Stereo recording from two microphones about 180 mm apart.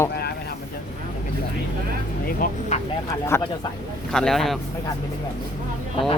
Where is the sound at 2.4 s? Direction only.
50° left (ahead or behind).